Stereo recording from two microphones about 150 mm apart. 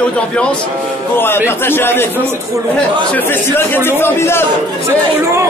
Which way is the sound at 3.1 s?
15° left (ahead or behind).